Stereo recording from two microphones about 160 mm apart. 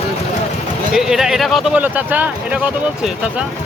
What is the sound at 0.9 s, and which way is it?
Speech, 5° right (ahead or behind).